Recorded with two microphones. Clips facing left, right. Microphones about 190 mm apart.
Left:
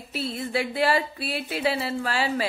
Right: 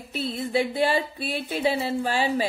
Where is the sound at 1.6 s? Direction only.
20° right (ahead or behind).